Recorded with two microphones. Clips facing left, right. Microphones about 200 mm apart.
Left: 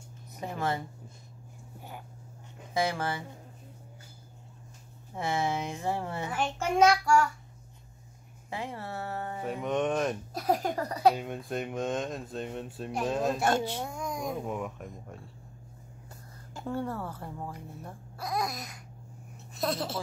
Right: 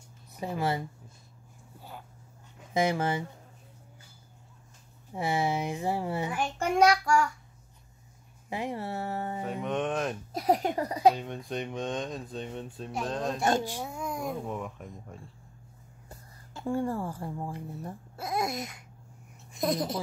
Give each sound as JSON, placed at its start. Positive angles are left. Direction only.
{"t": 0.6, "sound": "a child's voice", "side_deg": -15}
{"t": 1.8, "sound": "a sound", "side_deg": 15}
{"t": 2.7, "sound": "speech", "side_deg": -20}
{"t": 5.1, "sound": "a child's voice", "side_deg": -15}
{"t": 8.5, "sound": "a child's voice", "side_deg": -15}
{"t": 9.4, "sound": "speech", "side_deg": 0}
{"t": 10.3, "sound": "speech", "side_deg": -20}
{"t": 11.1, "sound": "speech", "side_deg": 5}
{"t": 13.7, "sound": "speech", "side_deg": -10}
{"t": 16.6, "sound": "a child's voice", "side_deg": -10}
{"t": 18.1, "sound": "speech", "side_deg": -25}